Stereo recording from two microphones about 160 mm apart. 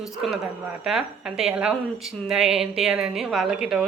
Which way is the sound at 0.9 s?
5° right (ahead or behind).